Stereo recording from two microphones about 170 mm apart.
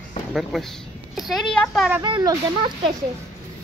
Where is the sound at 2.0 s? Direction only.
25° right (ahead or behind).